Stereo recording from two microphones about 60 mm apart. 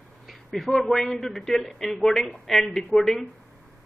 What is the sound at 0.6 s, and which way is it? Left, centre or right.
A man's voice, centre.